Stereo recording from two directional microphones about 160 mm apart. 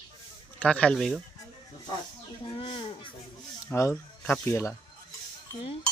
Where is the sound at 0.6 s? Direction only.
5° left (ahead or behind).